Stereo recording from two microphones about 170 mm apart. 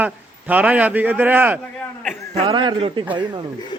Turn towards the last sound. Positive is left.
turn(degrees=-30)  # may be behind; listen again after turning